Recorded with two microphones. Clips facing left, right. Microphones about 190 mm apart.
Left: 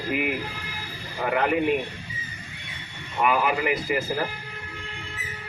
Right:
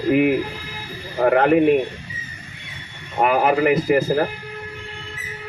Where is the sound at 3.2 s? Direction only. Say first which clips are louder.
Right 6 dB; 50° right (ahead or behind).